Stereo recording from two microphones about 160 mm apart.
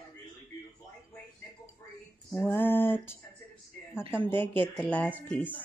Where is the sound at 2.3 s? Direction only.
10° left (ahead or behind).